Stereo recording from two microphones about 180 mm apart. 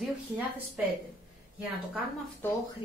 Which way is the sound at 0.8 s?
10° right (ahead or behind).